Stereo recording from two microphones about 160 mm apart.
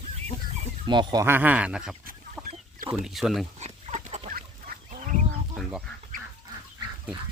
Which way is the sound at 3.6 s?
45° right (ahead or behind).